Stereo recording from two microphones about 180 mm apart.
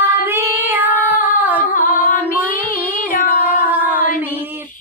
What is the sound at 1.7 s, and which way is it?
Music, 50° left (ahead or behind).